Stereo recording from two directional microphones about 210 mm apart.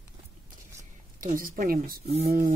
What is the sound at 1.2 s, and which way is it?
A woman's voice, 40° right (ahead or behind).